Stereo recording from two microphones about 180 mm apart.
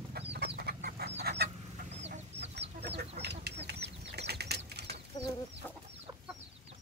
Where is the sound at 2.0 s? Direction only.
35° right (ahead or behind).